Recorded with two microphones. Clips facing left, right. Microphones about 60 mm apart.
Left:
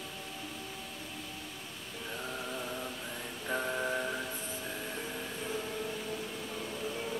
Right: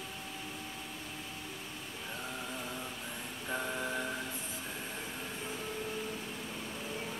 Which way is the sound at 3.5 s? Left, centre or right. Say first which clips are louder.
Left 3 dB; centre.